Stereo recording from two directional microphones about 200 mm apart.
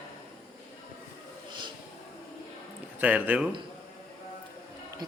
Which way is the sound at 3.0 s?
5° right (ahead or behind).